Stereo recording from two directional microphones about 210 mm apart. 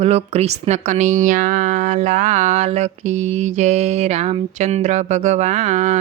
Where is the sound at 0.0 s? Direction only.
30° right (ahead or behind).